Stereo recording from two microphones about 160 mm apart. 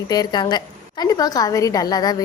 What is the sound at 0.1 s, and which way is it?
A woman's voice, 25° left (ahead or behind).